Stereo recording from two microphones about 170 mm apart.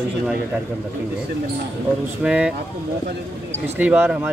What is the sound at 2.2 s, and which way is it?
Speech, 5° right (ahead or behind).